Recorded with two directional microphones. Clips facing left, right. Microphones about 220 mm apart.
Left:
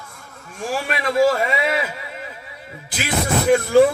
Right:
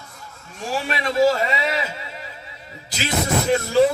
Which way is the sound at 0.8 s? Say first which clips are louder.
Left 1 dB; 55° left (ahead or behind).